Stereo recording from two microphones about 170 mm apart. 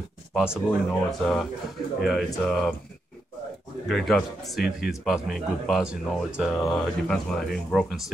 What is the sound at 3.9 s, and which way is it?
Speech, centre (ahead or behind).